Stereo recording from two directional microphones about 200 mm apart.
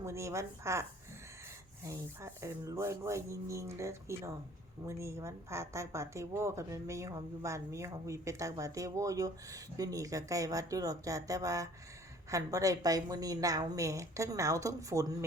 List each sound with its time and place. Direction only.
0.0 s a woman's voice: 15° right (ahead or behind)